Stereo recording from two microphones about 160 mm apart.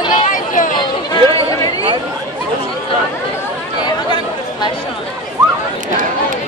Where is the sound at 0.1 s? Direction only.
55° left (ahead or behind).